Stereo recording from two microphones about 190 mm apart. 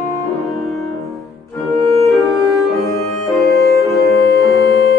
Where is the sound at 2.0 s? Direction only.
Centre (ahead or behind).